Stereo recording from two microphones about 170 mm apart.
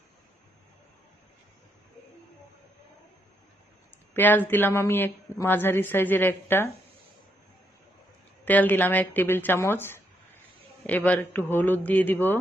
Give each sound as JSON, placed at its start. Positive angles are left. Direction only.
{"t": 4.1, "sound": "speech", "side_deg": 10}
{"t": 8.5, "sound": "speech", "side_deg": 10}